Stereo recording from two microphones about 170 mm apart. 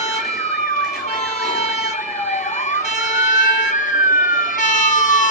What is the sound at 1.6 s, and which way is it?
Emergency vehicle, 40° left (ahead or behind).